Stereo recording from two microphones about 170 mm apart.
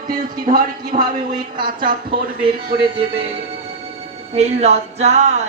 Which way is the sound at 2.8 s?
35° right (ahead or behind).